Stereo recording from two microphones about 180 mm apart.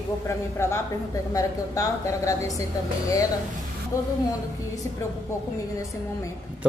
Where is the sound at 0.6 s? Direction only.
15° left (ahead or behind).